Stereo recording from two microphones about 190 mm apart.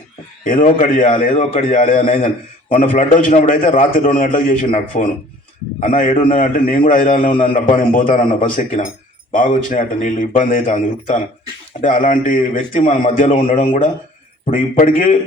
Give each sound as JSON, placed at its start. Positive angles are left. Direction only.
{"t": 0.4, "sound": "a man's voice", "side_deg": 45}